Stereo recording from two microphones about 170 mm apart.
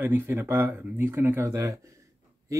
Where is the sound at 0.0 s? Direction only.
10° right (ahead or behind).